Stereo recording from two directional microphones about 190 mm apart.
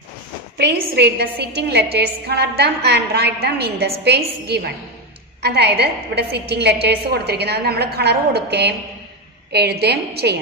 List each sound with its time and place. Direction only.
0.6 s a woman's voice: 65° right (ahead or behind)